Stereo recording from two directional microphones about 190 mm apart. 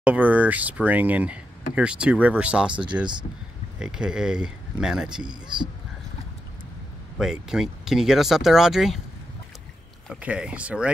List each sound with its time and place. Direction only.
0.0 s speech: 10° right (ahead or behind)
2.7 s speech: 25° right (ahead or behind)
3.8 s speech: 5° right (ahead or behind)
5.2 s speech: 25° right (ahead or behind)
7.2 s speech: centre (ahead or behind)
10.0 s speech: 5° right (ahead or behind)